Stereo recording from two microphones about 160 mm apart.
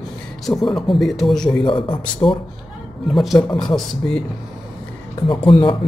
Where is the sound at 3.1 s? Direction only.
Centre (ahead or behind).